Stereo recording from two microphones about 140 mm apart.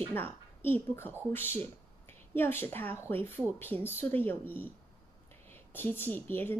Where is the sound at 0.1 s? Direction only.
15° left (ahead or behind).